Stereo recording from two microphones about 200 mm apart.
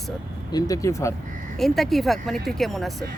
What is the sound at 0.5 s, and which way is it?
Speech, 15° left (ahead or behind).